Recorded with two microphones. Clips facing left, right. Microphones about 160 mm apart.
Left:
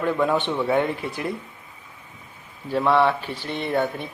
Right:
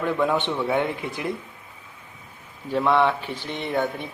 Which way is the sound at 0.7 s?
15° right (ahead or behind).